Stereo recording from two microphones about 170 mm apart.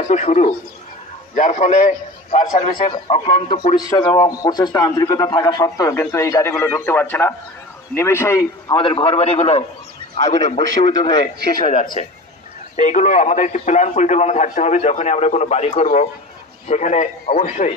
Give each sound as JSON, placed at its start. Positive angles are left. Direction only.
{"t": 0.1, "sound": "a man's voice", "side_deg": 45}
{"t": 3.7, "sound": "a man's voice", "side_deg": 25}